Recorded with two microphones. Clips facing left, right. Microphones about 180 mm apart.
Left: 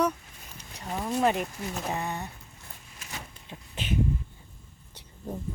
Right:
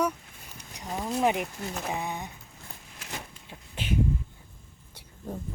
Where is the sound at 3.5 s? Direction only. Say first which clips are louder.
Even; 10° right (ahead or behind).